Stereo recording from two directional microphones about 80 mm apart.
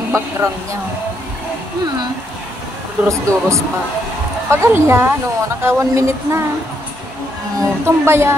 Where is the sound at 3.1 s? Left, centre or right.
Right.